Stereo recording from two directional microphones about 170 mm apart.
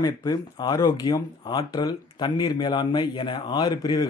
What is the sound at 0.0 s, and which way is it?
A man's voice, 25° left (ahead or behind).